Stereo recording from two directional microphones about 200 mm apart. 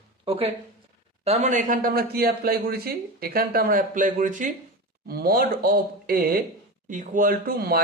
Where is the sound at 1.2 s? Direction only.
35° right (ahead or behind).